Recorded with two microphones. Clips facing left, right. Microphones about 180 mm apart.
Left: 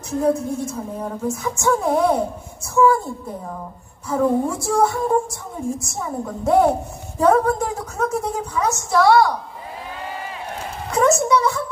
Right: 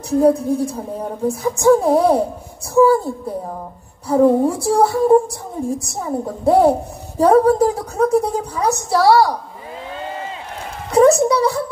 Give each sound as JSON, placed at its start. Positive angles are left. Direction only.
{"t": 0.1, "sound": "a woman's voice", "side_deg": -35}
{"t": 4.1, "sound": "a woman's voice", "side_deg": -35}
{"t": 10.9, "sound": "a child's voice", "side_deg": -35}